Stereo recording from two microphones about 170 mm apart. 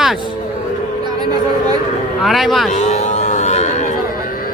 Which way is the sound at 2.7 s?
45° left (ahead or behind).